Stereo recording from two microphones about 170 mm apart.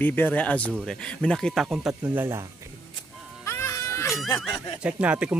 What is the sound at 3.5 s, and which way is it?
Music, 15° left (ahead or behind).